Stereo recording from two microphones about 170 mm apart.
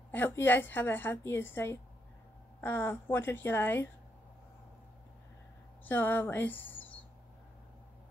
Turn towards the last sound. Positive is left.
turn(degrees=10)  # may be behind; listen again after turning